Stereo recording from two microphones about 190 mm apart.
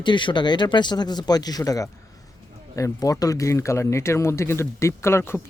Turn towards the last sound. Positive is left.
turn(degrees=10)  # may be behind; listen again after turning